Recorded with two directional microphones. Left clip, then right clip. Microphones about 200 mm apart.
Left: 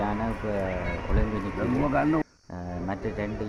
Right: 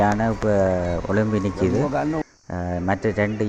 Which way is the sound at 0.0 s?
30° right (ahead or behind).